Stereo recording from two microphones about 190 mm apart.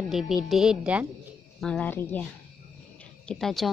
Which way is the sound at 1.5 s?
5° left (ahead or behind).